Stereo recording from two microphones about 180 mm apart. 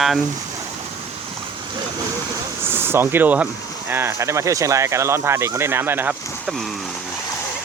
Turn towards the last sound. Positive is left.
turn(degrees=-5)  # may be behind; listen again after turning